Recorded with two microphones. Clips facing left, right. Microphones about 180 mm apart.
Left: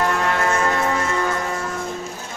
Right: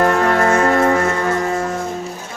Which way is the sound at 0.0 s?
50° right (ahead or behind).